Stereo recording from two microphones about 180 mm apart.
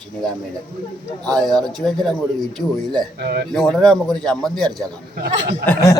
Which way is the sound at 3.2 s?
60° right (ahead or behind).